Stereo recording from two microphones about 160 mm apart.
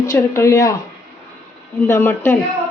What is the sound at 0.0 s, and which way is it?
Speech, 20° left (ahead or behind).